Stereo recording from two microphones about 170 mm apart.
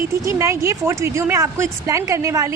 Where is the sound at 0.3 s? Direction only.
15° right (ahead or behind).